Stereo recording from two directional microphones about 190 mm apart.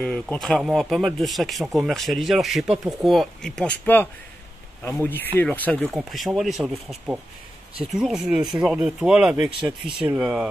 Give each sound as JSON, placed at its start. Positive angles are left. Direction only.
{"t": 0.0, "sound": "speech", "side_deg": 5}
{"t": 9.6, "sound": "speech", "side_deg": -25}
{"t": 9.9, "sound": "speech", "side_deg": -5}